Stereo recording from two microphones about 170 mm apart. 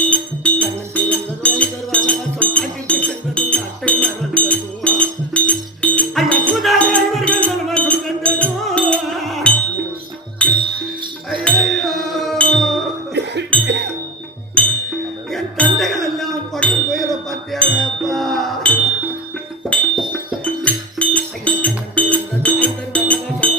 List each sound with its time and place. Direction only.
0.1 s music: 10° left (ahead or behind)
13.7 s music: 90° right
14.6 s music: 5° left (ahead or behind)
15.3 s a sound: centre (ahead or behind)
19.6 s music: centre (ahead or behind)